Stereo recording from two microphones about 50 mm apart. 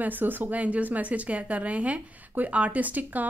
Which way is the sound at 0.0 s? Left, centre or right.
Right.